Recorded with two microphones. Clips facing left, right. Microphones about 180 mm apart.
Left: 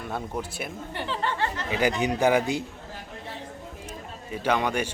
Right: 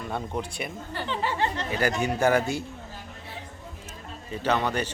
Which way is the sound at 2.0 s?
15° left (ahead or behind).